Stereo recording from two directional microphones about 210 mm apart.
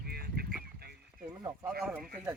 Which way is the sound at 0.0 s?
50° right (ahead or behind).